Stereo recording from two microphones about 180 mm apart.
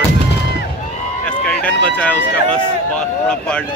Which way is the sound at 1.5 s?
5° left (ahead or behind).